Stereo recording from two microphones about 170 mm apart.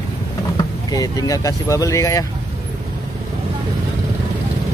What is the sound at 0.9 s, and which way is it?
Speech, 20° left (ahead or behind).